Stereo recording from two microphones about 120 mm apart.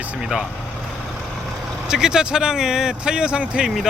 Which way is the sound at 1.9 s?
5° right (ahead or behind).